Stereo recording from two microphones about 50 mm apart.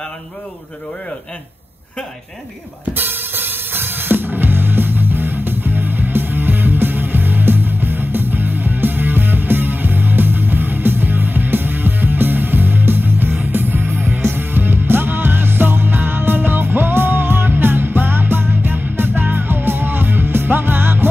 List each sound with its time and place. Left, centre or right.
2.8 s music: right